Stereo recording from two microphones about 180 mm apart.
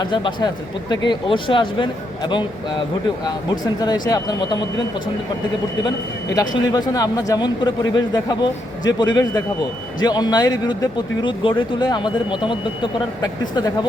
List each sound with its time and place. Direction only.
0.0 s speech: 25° left (ahead or behind)
6.3 s speech: 25° left (ahead or behind)